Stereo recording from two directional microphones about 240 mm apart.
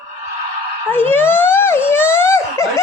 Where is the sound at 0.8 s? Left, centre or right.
Centre.